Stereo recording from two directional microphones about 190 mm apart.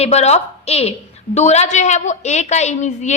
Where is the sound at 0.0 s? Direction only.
35° left (ahead or behind).